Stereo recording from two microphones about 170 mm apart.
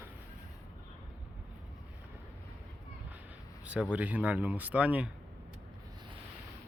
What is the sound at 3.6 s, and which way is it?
Speech, 10° right (ahead or behind).